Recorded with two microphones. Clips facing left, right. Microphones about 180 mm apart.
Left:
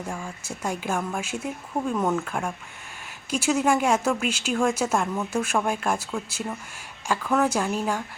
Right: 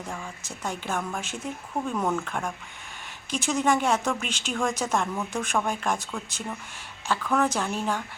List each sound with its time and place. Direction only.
0.0 s speech: 10° left (ahead or behind)